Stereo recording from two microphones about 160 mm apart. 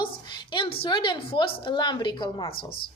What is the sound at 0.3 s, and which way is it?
A woman's voice, 30° left (ahead or behind).